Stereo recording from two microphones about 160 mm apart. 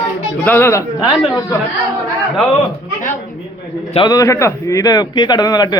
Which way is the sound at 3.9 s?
20° left (ahead or behind).